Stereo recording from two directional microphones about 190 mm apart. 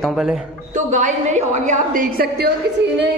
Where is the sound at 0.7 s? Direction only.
40° right (ahead or behind).